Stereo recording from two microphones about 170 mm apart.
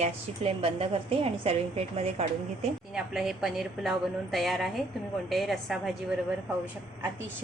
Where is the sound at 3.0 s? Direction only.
Centre (ahead or behind).